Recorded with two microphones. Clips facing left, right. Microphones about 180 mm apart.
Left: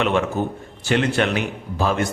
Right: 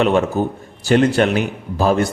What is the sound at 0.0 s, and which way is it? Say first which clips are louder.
A man's voice: right 4 dB; 35° right (ahead or behind).